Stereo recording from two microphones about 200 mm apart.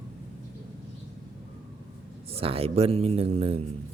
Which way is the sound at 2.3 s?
30° right (ahead or behind).